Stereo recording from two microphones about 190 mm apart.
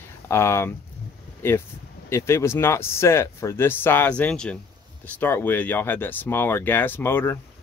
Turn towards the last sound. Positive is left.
turn(degrees=10)  # may be behind; listen again after turning